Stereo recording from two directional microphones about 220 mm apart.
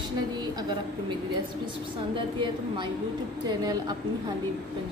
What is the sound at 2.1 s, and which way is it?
A woman's voice, 20° right (ahead or behind).